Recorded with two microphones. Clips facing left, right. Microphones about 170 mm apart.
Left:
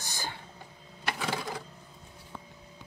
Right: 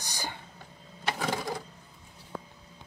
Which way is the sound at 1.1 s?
40° right (ahead or behind).